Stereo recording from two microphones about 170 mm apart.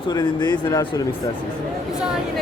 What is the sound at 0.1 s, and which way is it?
Speech, 25° left (ahead or behind).